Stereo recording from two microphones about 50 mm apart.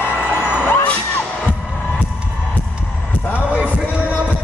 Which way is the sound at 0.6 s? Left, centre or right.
Left.